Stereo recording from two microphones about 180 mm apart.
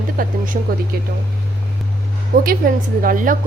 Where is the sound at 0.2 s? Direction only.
50° right (ahead or behind).